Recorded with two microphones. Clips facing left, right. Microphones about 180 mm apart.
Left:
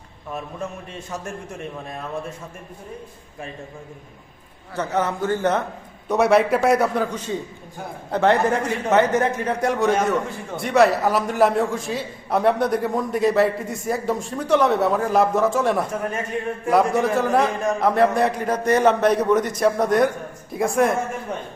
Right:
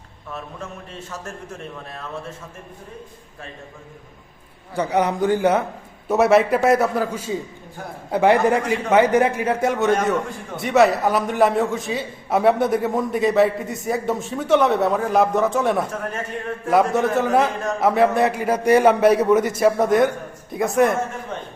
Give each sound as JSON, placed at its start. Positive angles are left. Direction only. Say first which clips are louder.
{"t": 4.7, "sound": "a man's voice", "louder": "right 3 dB", "side_deg": -10}